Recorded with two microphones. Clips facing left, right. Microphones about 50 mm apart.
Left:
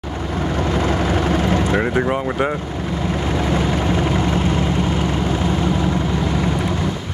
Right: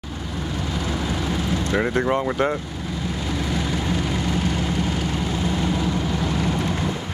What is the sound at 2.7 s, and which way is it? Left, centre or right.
Vehicle, left.